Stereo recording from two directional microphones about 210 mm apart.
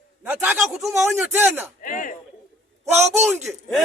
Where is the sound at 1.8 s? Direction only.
40° left (ahead or behind).